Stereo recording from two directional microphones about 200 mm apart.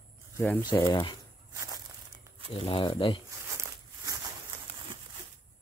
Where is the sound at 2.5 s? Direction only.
25° left (ahead or behind).